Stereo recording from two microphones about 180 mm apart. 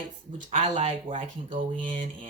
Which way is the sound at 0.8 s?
35° right (ahead or behind).